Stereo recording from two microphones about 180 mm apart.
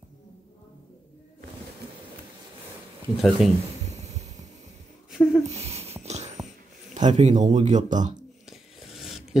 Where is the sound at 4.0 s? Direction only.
40° right (ahead or behind).